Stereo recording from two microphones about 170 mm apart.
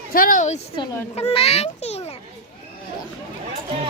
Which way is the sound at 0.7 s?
35° left (ahead or behind).